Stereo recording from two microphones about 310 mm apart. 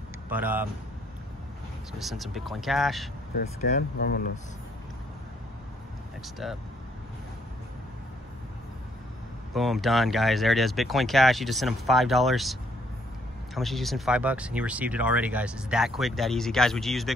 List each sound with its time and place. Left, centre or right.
0.3 s speech: centre
2.0 s speech: centre
3.3 s speech: left
6.2 s speech: centre
9.5 s speech: centre
13.6 s speech: centre